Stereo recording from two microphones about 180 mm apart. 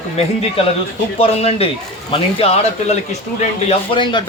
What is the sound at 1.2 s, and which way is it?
A man's voice, 35° left (ahead or behind).